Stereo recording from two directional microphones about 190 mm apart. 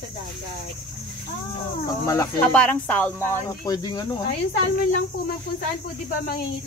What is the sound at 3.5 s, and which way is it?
Speech, 20° left (ahead or behind).